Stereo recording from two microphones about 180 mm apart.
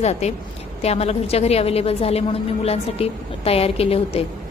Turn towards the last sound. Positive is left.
turn(degrees=35)  # may be behind; listen again after turning